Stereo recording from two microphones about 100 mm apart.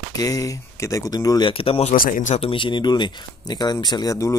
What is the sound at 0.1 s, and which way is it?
Speech, 35° left (ahead or behind).